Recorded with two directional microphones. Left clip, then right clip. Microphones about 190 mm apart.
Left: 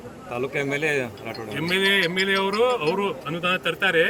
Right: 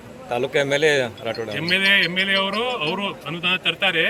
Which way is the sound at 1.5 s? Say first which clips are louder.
Right 3 dB; 10° left (ahead or behind).